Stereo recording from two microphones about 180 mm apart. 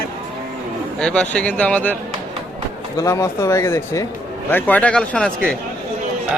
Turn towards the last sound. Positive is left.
turn(degrees=5)  # may be behind; listen again after turning